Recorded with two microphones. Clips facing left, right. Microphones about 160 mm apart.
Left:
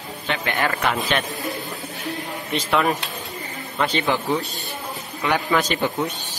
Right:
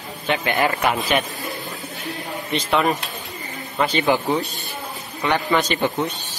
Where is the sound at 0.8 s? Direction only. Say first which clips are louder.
Right 2 dB; 5° right (ahead or behind).